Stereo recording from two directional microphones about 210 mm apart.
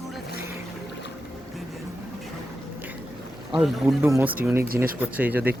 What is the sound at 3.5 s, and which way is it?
Speech, centre (ahead or behind).